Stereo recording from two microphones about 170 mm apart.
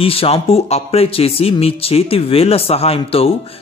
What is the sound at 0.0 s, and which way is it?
Speech, 35° left (ahead or behind).